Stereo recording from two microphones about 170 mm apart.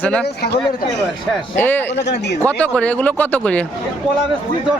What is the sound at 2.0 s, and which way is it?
Speech, 90° left.